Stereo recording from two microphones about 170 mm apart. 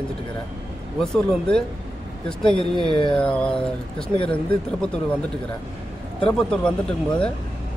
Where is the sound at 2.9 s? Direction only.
30° left (ahead or behind).